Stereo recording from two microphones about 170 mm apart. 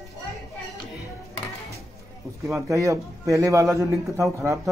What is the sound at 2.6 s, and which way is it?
A man's voice, 20° right (ahead or behind).